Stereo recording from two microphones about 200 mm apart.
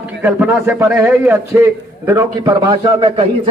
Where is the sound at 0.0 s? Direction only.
10° right (ahead or behind).